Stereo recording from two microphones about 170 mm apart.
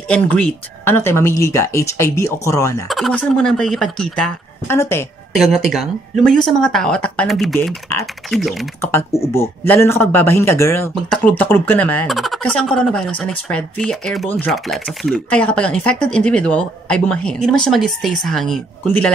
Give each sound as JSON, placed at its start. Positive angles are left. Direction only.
{"t": 0.1, "sound": "speech", "side_deg": 10}
{"t": 2.9, "sound": "speech", "side_deg": 5}
{"t": 4.6, "sound": "speech", "side_deg": 15}
{"t": 5.3, "sound": "speech", "side_deg": 0}
{"t": 9.3, "sound": "speech", "side_deg": 15}